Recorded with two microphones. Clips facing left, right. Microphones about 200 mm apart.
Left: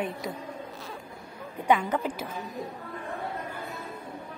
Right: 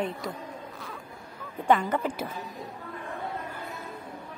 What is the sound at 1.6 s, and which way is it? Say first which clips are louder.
Speech: right 1 dB; 10° left (ahead or behind).